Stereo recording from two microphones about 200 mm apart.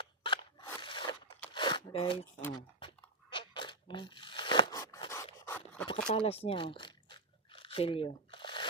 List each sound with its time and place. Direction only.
0.0 s scissors: 25° left (ahead or behind)
1.5 s a sound: 25° left (ahead or behind)
2.5 s crunch: 25° left (ahead or behind)
6.1 s biting: 30° left (ahead or behind)